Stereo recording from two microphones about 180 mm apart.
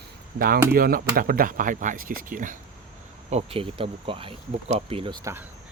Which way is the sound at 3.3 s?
35° right (ahead or behind).